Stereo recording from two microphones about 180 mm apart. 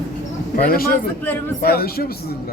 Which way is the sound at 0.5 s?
55° left (ahead or behind).